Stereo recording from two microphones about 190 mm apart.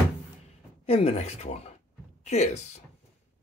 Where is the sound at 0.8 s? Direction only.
30° left (ahead or behind).